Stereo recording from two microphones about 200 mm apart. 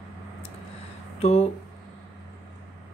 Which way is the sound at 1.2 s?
30° left (ahead or behind).